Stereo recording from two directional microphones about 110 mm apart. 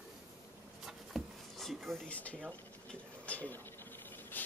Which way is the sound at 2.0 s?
10° left (ahead or behind).